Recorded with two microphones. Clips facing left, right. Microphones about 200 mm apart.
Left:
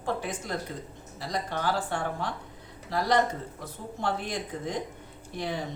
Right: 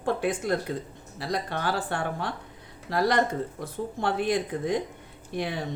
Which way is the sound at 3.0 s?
60° right (ahead or behind).